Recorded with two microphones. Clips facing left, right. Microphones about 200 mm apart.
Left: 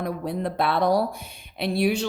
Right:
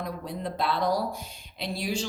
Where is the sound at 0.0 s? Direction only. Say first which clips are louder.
Left 6 dB; 60° left (ahead or behind).